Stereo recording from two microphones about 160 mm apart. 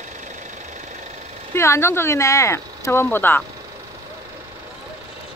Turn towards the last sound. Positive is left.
turn(degrees=15)  # may be behind; listen again after turning